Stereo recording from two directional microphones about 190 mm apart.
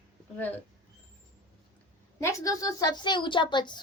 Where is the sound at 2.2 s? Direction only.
15° left (ahead or behind).